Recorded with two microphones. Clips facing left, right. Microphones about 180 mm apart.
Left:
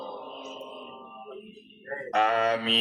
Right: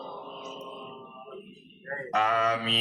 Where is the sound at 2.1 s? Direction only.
30° left (ahead or behind).